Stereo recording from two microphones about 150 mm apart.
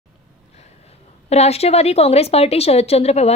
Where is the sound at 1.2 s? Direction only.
45° left (ahead or behind).